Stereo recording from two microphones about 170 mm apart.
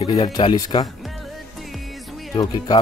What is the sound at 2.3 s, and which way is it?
Speech, 25° left (ahead or behind).